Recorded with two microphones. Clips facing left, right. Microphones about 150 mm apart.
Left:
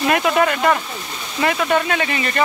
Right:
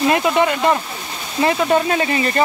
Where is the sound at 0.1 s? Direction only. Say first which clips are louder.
Right 1 dB; 20° right (ahead or behind).